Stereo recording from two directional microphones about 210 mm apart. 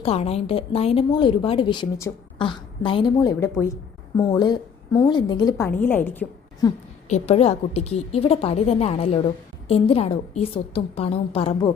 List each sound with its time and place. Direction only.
0.0 s a woman's voice: 30° left (ahead or behind); by 6.7 s 10° left (ahead or behind)
7.1 s a woman's voice: 30° left (ahead or behind)